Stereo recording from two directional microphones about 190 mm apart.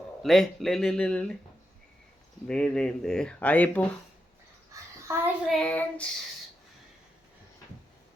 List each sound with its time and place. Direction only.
0.2 s speech: centre (ahead or behind)
2.5 s speech: 5° left (ahead or behind)
5.1 s a child's voice: 15° right (ahead or behind)
5.5 s speech: 5° left (ahead or behind)